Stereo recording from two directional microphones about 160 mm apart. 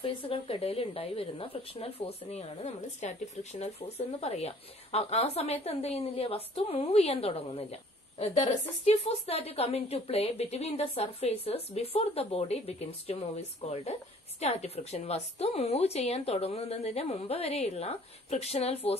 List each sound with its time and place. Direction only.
0.0 s a woman's voice: 35° left (ahead or behind)
4.2 s a woman's voice: 40° left (ahead or behind)